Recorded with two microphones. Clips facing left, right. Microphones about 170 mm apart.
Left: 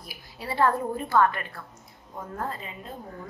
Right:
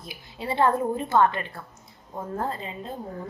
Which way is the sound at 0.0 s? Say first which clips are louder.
Right 4 dB; 20° right (ahead or behind).